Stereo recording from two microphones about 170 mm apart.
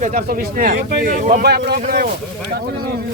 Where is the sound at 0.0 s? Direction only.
45° right (ahead or behind); by 2.0 s 65° right (ahead or behind).